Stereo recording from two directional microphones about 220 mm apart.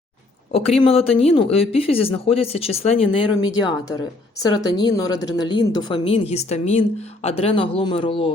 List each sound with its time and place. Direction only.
0.5 s speech: 25° left (ahead or behind)